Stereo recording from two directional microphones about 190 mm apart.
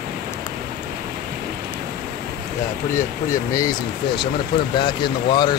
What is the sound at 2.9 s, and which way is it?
Speech, 15° left (ahead or behind).